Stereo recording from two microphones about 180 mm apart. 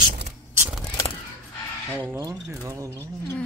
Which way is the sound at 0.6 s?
5° right (ahead or behind).